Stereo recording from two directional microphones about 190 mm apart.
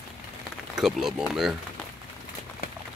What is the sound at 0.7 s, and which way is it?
Speech, 5° right (ahead or behind).